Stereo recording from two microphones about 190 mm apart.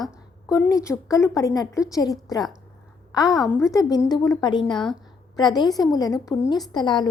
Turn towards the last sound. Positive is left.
turn(degrees=25)  # may be behind; listen again after turning